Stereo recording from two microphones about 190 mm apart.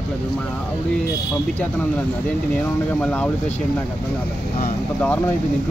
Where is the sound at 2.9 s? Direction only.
5° left (ahead or behind).